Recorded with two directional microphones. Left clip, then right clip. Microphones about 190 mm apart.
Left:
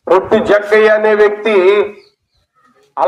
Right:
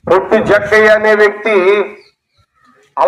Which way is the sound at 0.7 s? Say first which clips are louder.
Right 2 dB; 25° left (ahead or behind).